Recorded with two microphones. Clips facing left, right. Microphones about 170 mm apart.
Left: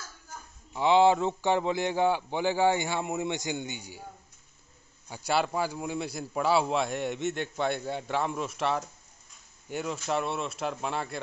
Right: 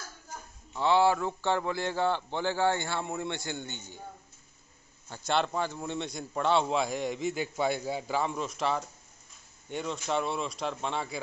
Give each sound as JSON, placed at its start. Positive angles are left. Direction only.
{"t": 0.7, "sound": "a man's voice", "side_deg": 20}
{"t": 5.0, "sound": "a man's voice", "side_deg": 10}